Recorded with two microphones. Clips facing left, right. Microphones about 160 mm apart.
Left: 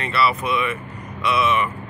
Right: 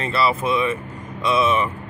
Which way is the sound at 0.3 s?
30° right (ahead or behind).